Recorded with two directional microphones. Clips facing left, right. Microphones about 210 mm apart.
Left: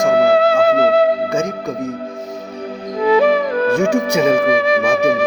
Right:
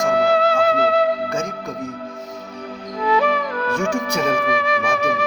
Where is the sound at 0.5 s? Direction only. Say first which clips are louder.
Left 5 dB; 25° left (ahead or behind).